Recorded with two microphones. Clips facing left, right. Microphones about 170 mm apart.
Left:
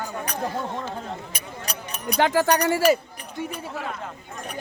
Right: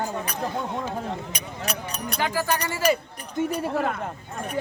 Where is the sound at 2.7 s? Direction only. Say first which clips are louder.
Left 2 dB; 40° left (ahead or behind).